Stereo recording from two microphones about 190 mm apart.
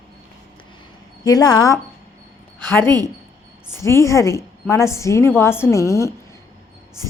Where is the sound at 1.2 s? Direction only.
20° left (ahead or behind).